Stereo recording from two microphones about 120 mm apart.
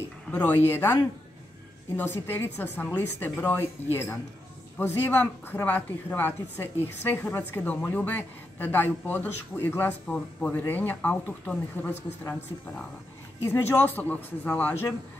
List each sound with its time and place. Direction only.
0.3 s a man's voice: 15° left (ahead or behind)
2.2 s speech: 15° left (ahead or behind)
13.5 s speech: 15° left (ahead or behind)